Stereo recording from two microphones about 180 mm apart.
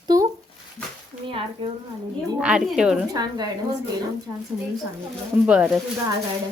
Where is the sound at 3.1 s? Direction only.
20° right (ahead or behind).